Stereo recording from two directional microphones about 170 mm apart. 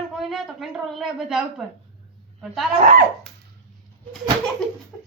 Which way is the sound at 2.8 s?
40° right (ahead or behind).